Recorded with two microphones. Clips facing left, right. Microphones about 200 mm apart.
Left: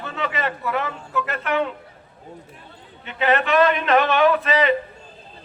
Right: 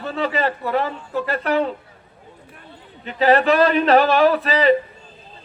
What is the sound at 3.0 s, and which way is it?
A man's voice, 35° right (ahead or behind).